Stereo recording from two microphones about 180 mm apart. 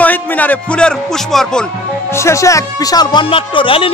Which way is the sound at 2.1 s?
15° left (ahead or behind).